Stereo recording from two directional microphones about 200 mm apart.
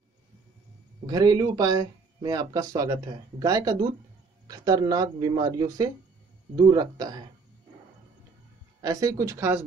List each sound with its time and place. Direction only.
1.0 s speech: 20° right (ahead or behind)
8.8 s speech: 15° right (ahead or behind)